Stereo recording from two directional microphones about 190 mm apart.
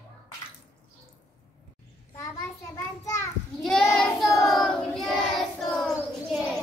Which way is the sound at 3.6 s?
Centre (ahead or behind).